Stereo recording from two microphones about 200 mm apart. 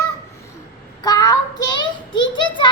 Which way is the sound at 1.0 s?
20° left (ahead or behind).